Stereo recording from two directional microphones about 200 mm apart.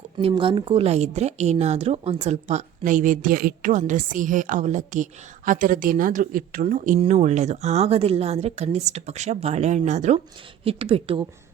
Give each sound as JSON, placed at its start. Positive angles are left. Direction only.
{"t": 0.2, "sound": "a woman's voice", "side_deg": -25}